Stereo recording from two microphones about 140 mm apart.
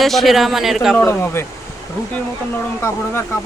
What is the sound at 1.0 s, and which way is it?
Speech, 15° left (ahead or behind).